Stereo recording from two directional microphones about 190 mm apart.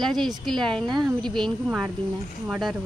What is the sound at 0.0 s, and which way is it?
Speech, centre (ahead or behind).